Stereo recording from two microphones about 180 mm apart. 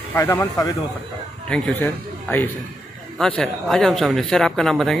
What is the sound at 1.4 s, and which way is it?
A man's voice, 5° left (ahead or behind).